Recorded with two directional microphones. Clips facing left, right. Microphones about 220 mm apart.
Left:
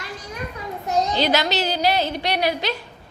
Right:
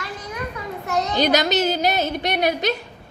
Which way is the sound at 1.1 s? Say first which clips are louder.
Right 6 dB; 45° right (ahead or behind).